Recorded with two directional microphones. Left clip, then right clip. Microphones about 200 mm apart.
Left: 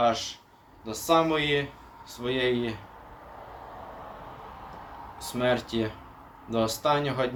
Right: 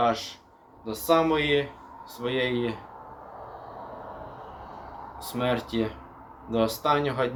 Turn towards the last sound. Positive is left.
turn(degrees=0)  # may be behind; listen again after turning